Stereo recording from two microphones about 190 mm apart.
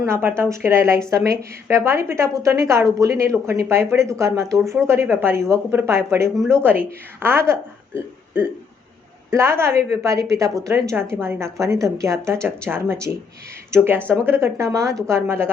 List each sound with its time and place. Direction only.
0.0 s speech: 10° right (ahead or behind)
4.4 s speech: centre (ahead or behind)
5.2 s speech: 15° right (ahead or behind)